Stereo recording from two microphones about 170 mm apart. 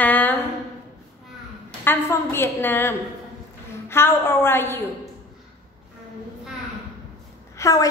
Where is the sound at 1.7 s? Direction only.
15° left (ahead or behind).